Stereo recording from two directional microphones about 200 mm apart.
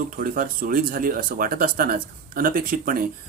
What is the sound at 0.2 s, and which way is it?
Speech, 45° right (ahead or behind).